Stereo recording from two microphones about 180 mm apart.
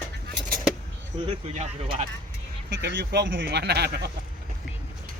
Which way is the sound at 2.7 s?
70° right (ahead or behind).